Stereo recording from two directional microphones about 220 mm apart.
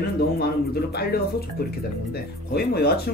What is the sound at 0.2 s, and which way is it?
Speech, 45° left (ahead or behind).